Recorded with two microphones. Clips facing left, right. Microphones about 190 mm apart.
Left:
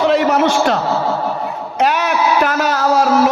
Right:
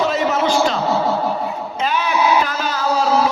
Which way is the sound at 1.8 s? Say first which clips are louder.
Left 4 dB; 70° left (ahead or behind).